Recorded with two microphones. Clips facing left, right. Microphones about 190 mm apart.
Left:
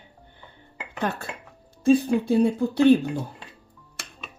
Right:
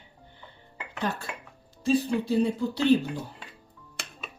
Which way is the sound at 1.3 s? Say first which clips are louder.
Left 1 dB; 25° left (ahead or behind).